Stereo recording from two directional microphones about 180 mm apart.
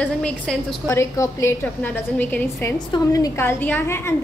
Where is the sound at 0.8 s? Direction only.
15° left (ahead or behind).